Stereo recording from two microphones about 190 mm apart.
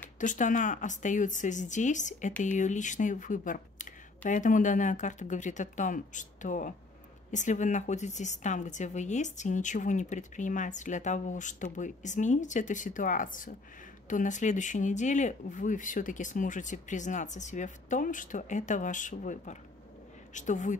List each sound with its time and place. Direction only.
0.2 s a woman's voice: 40° left (ahead or behind)